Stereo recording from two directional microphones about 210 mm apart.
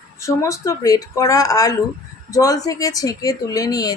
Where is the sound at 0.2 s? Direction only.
15° left (ahead or behind).